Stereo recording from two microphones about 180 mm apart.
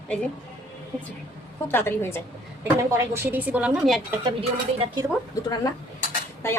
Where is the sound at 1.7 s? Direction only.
10° left (ahead or behind).